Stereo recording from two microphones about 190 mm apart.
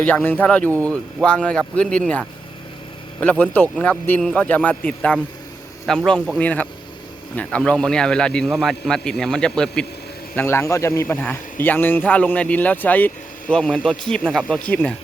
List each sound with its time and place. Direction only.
0.0 s a man's voice: 10° left (ahead or behind)
0.7 s speech: 15° right (ahead or behind)
1.2 s a man's voice: 5° left (ahead or behind)